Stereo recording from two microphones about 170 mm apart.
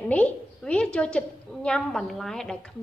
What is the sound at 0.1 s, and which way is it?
A woman's voice, 10° left (ahead or behind).